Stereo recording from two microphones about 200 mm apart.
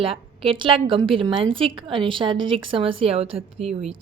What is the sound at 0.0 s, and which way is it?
A woman's voice, 25° right (ahead or behind).